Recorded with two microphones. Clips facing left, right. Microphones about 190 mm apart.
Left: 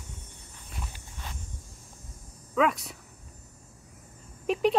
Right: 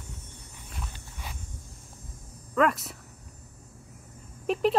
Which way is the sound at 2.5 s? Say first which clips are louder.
Right 1 dB; centre (ahead or behind).